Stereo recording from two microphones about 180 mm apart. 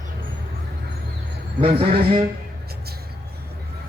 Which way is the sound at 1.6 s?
30° right (ahead or behind).